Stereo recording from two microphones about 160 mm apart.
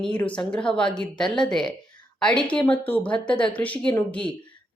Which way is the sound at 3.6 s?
10° left (ahead or behind).